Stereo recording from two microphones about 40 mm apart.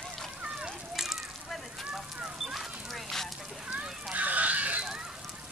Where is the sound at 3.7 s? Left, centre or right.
Right.